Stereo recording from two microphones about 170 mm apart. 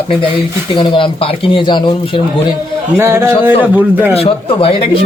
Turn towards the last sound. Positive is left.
turn(degrees=35)  # may be behind; listen again after turning